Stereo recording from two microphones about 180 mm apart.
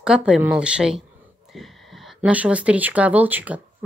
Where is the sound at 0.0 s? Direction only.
5° right (ahead or behind).